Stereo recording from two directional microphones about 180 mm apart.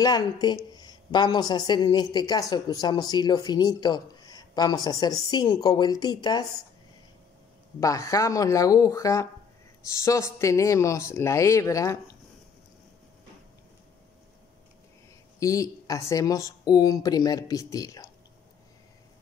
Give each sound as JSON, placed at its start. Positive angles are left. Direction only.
{"t": 0.0, "sound": "a woman's voice", "side_deg": 25}
{"t": 7.8, "sound": "speech", "side_deg": 20}
{"t": 15.3, "sound": "a woman's voice", "side_deg": 20}